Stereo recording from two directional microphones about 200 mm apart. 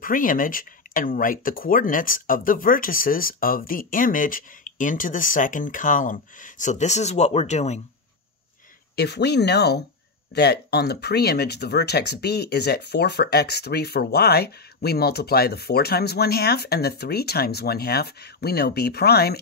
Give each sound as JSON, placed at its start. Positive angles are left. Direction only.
{"t": 0.0, "sound": "speech", "side_deg": 45}
{"t": 8.9, "sound": "speech", "side_deg": 55}